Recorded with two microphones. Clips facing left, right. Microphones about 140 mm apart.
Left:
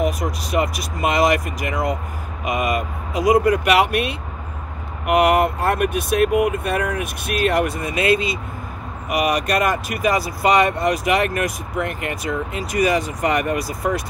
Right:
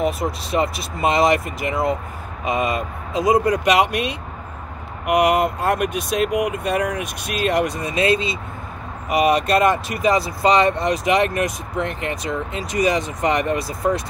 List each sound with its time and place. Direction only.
0.0 s speech: 30° right (ahead or behind)